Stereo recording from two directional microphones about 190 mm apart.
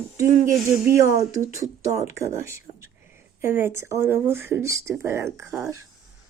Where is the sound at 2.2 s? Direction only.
15° right (ahead or behind).